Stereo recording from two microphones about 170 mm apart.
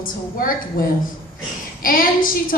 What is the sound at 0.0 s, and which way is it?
Speech, 55° left (ahead or behind).